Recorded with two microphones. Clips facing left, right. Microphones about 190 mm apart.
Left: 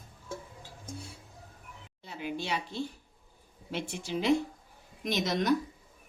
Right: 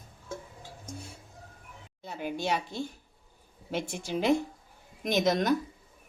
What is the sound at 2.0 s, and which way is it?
A woman's voice, 45° right (ahead or behind).